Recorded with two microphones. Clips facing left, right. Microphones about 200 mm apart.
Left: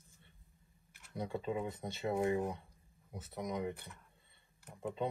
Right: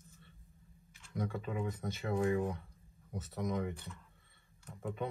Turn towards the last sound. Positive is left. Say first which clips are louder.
# left 1 dB
turn(degrees=20)  # may be behind; listen again after turning